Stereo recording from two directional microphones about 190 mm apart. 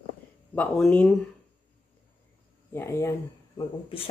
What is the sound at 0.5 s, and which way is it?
Speech, 5° left (ahead or behind).